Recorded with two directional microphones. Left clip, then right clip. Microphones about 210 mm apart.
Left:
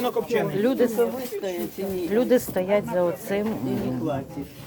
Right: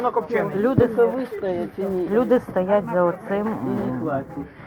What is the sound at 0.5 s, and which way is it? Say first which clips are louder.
Speech: right 2 dB; 15° left (ahead or behind).